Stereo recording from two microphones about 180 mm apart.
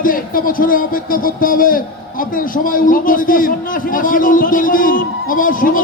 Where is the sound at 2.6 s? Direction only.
50° left (ahead or behind).